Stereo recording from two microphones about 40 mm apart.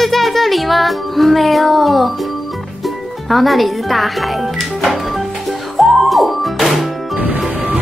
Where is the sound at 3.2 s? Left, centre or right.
Centre.